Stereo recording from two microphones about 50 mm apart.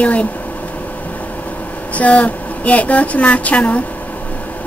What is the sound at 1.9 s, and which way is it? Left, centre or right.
Speech, left.